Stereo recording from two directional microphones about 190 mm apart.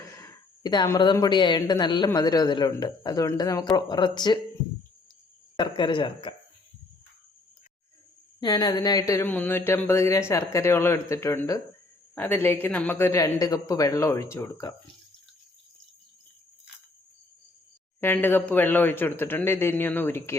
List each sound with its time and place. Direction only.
0.0 s speech: 15° left (ahead or behind)
5.5 s speech: 25° left (ahead or behind)
8.4 s speech: 20° left (ahead or behind)
18.0 s speech: 10° left (ahead or behind)